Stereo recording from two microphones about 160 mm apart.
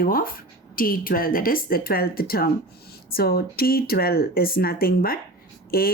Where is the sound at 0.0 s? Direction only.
65° left (ahead or behind).